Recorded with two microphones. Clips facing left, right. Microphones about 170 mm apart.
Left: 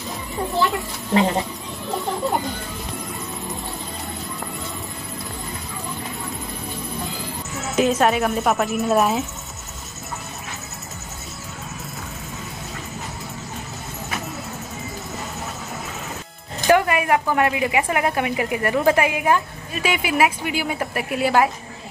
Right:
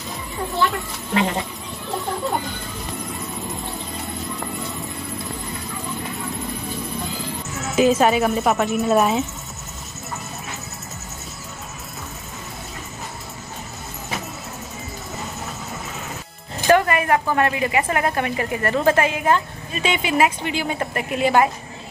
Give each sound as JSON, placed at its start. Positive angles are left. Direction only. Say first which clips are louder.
{"t": 0.6, "sound": "speech", "louder": "even", "side_deg": 20}
{"t": 7.7, "sound": "speech", "louder": "right 2 dB", "side_deg": 0}
{"t": 16.6, "sound": "speech", "louder": "even", "side_deg": 10}